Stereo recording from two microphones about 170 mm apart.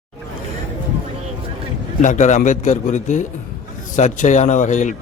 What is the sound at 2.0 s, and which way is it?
A man's voice, 45° left (ahead or behind).